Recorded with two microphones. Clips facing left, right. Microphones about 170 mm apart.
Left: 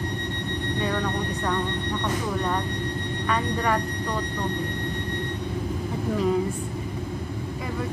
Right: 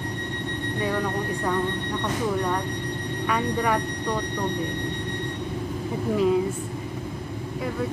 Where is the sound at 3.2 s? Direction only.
10° right (ahead or behind).